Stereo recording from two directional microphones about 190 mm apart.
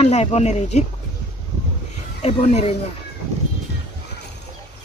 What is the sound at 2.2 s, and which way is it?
Speech, 35° left (ahead or behind).